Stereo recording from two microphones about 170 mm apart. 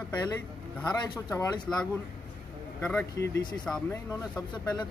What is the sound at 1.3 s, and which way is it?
Speech, 15° left (ahead or behind).